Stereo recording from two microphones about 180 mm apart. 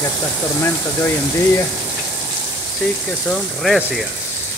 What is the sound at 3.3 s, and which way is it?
Speech, centre (ahead or behind).